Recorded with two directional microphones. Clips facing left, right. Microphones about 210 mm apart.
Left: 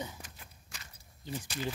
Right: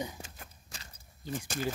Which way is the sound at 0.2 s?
25° right (ahead or behind).